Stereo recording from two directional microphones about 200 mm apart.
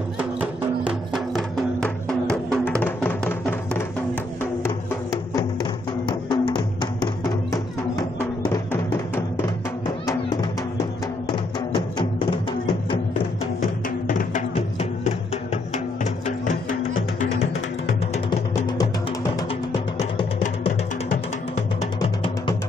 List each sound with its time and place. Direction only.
0.2 s music: 5° right (ahead or behind); by 3.8 s 10° left (ahead or behind)
5.1 s music: 20° left (ahead or behind)
11.7 s music: 20° left (ahead or behind)
13.6 s music: 40° left (ahead or behind)
20.0 s music: 30° left (ahead or behind)